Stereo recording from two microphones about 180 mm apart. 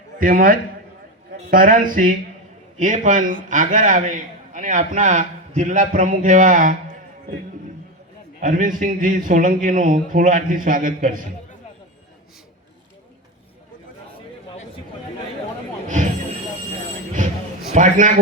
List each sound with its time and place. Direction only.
0.2 s a man's voice: 50° right (ahead or behind)
8.4 s a man's voice: 50° right (ahead or behind)
17.7 s a man's voice: 45° right (ahead or behind)